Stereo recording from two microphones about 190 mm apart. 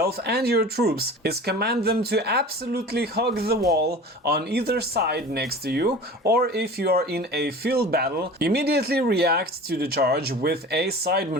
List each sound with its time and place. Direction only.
0.0 s speech: 60° right (ahead or behind)